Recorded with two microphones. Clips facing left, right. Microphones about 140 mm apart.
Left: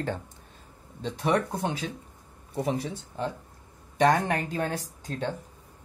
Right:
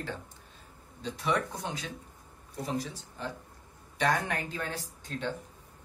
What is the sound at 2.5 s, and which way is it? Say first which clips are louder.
Speech: left 5 dB; 60° left (ahead or behind).